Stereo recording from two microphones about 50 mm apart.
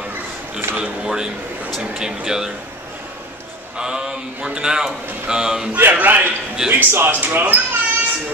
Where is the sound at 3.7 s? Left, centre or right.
Centre.